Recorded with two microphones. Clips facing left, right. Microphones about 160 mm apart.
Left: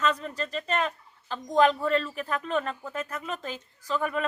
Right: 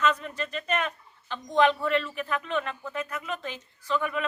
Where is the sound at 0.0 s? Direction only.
35° left (ahead or behind).